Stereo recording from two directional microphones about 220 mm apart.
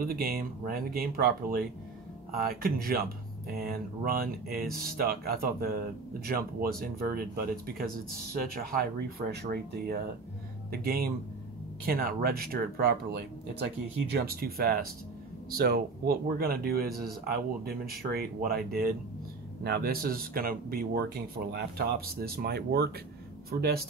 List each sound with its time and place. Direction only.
0.0 s speech: 45° right (ahead or behind)